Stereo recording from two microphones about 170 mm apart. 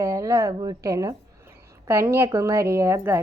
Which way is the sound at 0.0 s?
15° right (ahead or behind).